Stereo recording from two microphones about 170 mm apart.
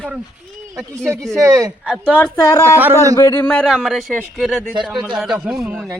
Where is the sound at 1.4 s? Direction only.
20° right (ahead or behind).